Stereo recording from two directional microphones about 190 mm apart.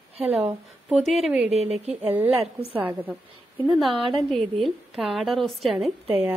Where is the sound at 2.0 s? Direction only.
10° right (ahead or behind).